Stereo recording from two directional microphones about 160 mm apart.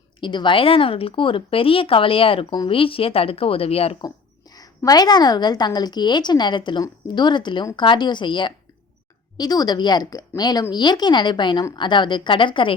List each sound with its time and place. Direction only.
0.2 s speech: 30° left (ahead or behind)
4.0 s a woman's voice: 25° left (ahead or behind)